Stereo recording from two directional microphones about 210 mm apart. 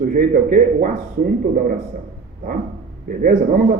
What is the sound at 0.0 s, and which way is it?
Speech, 40° right (ahead or behind).